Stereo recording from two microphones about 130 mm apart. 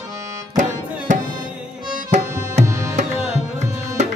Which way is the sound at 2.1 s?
65° right (ahead or behind).